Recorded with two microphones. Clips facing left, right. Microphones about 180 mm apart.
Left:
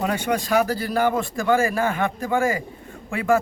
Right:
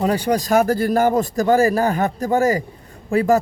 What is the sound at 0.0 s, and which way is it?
Speech, 35° right (ahead or behind).